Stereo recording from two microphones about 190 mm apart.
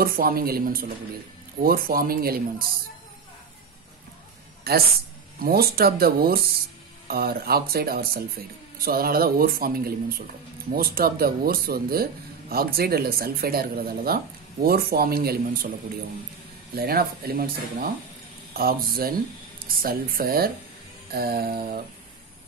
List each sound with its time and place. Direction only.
0.0 s speech: 50° right (ahead or behind)
4.7 s speech: 55° right (ahead or behind)
16.7 s speech: 55° right (ahead or behind)